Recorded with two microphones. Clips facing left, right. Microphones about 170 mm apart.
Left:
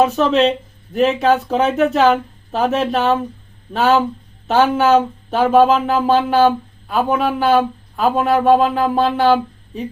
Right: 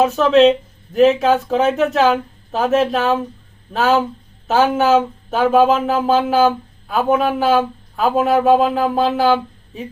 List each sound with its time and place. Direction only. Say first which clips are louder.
0.2 s speech: right 3 dB; centre (ahead or behind)
4.4 s speech: left 1 dB; centre (ahead or behind)